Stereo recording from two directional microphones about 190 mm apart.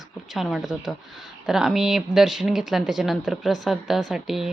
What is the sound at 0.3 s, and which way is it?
A woman's voice, centre (ahead or behind).